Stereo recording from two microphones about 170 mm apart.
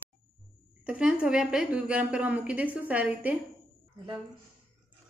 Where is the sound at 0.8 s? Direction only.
5° right (ahead or behind).